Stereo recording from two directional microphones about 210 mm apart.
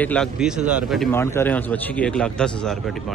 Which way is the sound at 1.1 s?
10° left (ahead or behind).